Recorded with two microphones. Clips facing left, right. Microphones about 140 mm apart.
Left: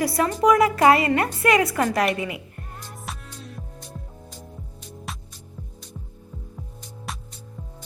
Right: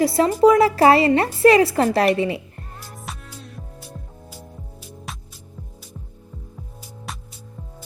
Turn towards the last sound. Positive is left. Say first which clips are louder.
# even
turn(degrees=0)  # may be behind; listen again after turning